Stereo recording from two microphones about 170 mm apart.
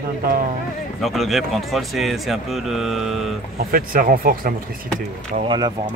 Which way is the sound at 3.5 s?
60° right (ahead or behind).